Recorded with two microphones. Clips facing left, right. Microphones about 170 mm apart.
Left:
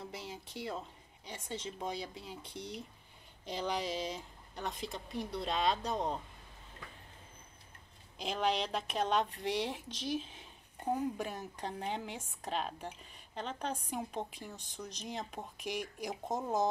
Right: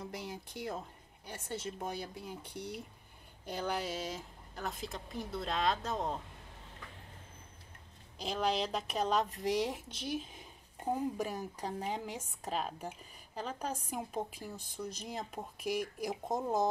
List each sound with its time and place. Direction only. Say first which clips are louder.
0.1 s a sound: right 2 dB; 60° right (ahead or behind)
0.5 s a woman's voice: left 2 dB; 10° right (ahead or behind)
8.2 s a woman's voice: even; centre (ahead or behind)